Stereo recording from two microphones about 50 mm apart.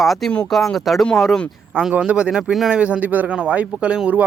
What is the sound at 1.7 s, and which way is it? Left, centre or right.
Speech, right.